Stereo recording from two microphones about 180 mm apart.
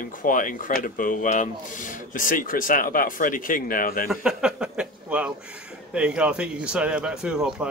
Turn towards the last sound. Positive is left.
turn(degrees=-5)  # may be behind; listen again after turning